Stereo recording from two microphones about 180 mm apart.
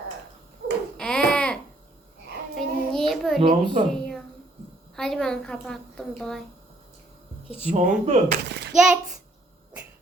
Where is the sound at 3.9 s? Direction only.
5° left (ahead or behind).